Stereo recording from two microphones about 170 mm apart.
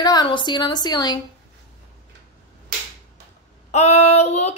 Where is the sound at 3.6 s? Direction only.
40° left (ahead or behind).